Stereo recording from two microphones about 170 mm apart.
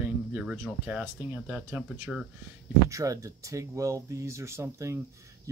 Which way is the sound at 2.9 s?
20° right (ahead or behind).